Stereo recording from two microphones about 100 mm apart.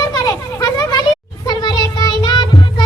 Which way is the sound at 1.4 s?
45° left (ahead or behind).